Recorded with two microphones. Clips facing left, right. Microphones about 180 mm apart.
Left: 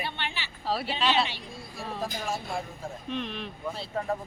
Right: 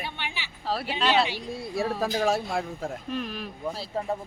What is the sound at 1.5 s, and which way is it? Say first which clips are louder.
Speech: right 9 dB; 70° right (ahead or behind).